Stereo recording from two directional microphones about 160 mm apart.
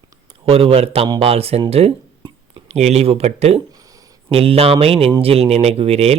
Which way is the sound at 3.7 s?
25° right (ahead or behind).